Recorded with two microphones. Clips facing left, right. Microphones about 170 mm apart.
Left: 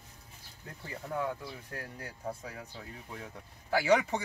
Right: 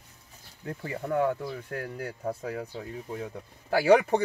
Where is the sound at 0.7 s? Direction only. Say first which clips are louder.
Right 9 dB; 65° right (ahead or behind).